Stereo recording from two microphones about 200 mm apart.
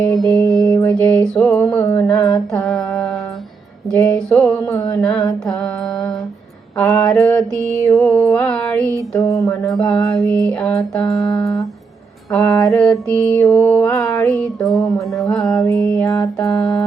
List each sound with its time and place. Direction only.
0.0 s mantra: centre (ahead or behind)
0.6 s mantra: 15° left (ahead or behind)
8.1 s a sound: 5° left (ahead or behind)
9.6 s mantra: 5° left (ahead or behind)
10.2 s a sound: 15° right (ahead or behind)
10.5 s mantra: 5° left (ahead or behind)
12.3 s mantra: 5° left (ahead or behind)
14.4 s music: centre (ahead or behind)
14.8 s mantra: 20° left (ahead or behind)
15.0 s music: centre (ahead or behind)
15.4 s music: 15° left (ahead or behind)